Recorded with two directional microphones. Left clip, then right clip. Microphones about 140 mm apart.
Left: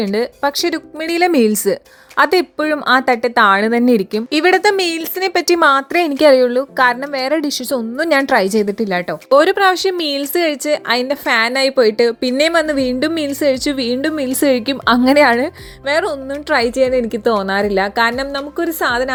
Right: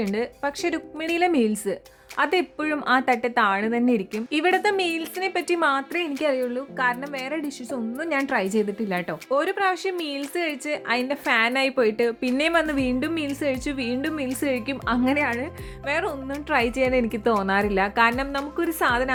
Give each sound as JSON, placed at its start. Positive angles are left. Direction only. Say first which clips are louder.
{"t": 0.1, "sound": "speech", "louder": "left 10 dB", "side_deg": 35}
{"t": 6.0, "sound": "a woman's voice", "louder": "left 14 dB", "side_deg": 50}
{"t": 9.3, "sound": "a woman's voice", "louder": "left 12 dB", "side_deg": 45}
{"t": 15.9, "sound": "speech", "louder": "left 9 dB", "side_deg": 35}
{"t": 16.5, "sound": "a woman's voice", "louder": "left 8 dB", "side_deg": 25}